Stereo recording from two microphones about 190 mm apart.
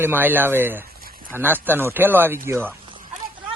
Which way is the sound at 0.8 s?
50° right (ahead or behind).